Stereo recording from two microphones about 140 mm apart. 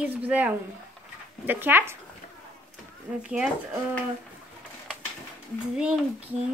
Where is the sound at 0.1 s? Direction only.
10° right (ahead or behind).